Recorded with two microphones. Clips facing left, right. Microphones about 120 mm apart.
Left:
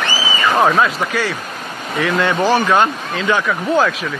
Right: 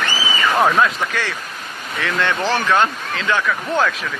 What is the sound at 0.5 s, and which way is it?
Speech, 5° left (ahead or behind).